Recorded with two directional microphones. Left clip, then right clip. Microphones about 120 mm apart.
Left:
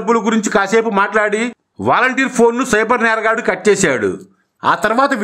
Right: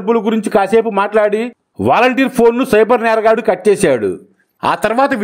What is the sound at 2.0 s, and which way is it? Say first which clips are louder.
A man's voice: right 2 dB; 30° right (ahead or behind).